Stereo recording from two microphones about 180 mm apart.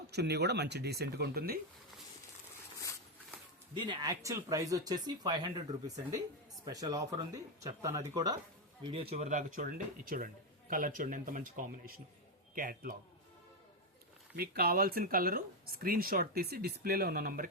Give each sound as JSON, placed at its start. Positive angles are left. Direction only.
{"t": 0.1, "sound": "speech", "side_deg": -65}
{"t": 3.8, "sound": "speech", "side_deg": -25}
{"t": 6.7, "sound": "speech", "side_deg": -20}
{"t": 14.3, "sound": "speech", "side_deg": -60}